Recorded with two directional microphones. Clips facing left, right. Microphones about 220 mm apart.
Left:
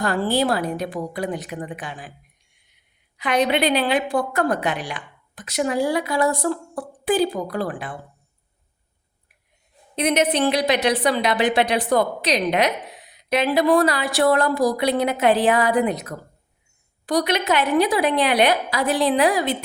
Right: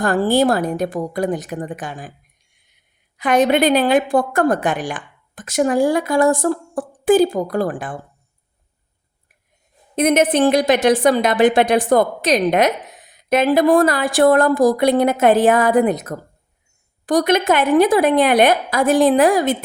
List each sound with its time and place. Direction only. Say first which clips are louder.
0.0 s a woman's voice: right 5 dB; 45° right (ahead or behind)
3.2 s a woman's voice: right 5 dB; 45° right (ahead or behind)
9.9 s a woman's voice: right 5 dB; 50° right (ahead or behind)